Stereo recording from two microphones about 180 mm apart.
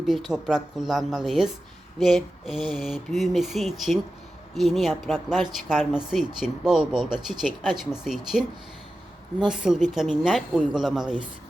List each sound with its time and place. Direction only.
0.0 s speech: centre (ahead or behind)